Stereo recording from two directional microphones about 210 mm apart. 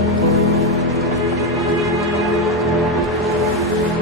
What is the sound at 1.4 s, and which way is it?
Music, centre (ahead or behind).